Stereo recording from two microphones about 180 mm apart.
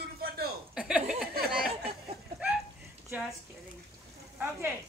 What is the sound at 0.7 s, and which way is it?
Chuckle, 5° right (ahead or behind).